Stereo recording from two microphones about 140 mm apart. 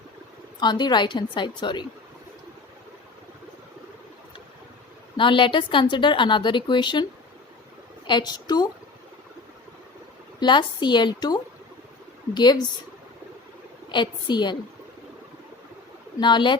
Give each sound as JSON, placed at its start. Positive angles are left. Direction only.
{"t": 0.6, "sound": "a woman's voice", "side_deg": 30}
{"t": 5.1, "sound": "a woman's voice", "side_deg": 35}
{"t": 8.0, "sound": "a woman's voice", "side_deg": 30}
{"t": 10.4, "sound": "a woman's voice", "side_deg": 35}
{"t": 13.9, "sound": "a woman's voice", "side_deg": 35}
{"t": 16.2, "sound": "a woman's voice", "side_deg": 35}